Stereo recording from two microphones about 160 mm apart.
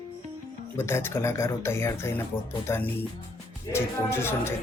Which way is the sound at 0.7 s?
15° left (ahead or behind).